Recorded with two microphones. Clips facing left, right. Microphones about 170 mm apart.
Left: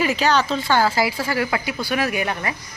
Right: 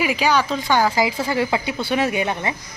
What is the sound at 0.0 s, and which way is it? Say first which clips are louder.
Speech: even; 10° right (ahead or behind).